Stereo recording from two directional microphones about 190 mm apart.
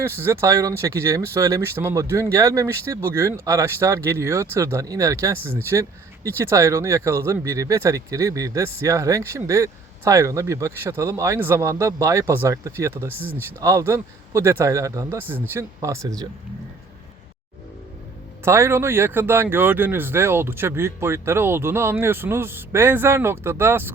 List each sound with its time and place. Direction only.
0.0 s speech: 15° right (ahead or behind)
18.4 s speech: 15° right (ahead or behind)